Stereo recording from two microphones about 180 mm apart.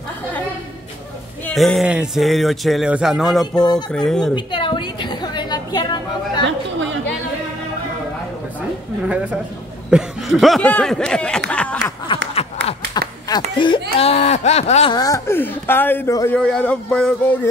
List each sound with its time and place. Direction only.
1.5 s speech: centre (ahead or behind)
4.4 s a sound: 25° left (ahead or behind)
6.4 s chatter: 90° right
9.0 s a woman's voice: 5° right (ahead or behind)
11.5 s a sound: 5° left (ahead or behind)
13.3 s a sound: 25° left (ahead or behind)
13.9 s speech: 35° left (ahead or behind)
14.9 s speech: 20° left (ahead or behind)
16.3 s speech: 5° left (ahead or behind)